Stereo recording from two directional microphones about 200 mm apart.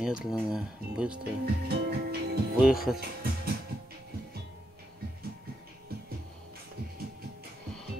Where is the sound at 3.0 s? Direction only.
50° right (ahead or behind).